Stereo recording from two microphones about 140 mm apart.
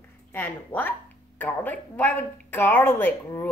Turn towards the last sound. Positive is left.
turn(degrees=20)  # may be behind; listen again after turning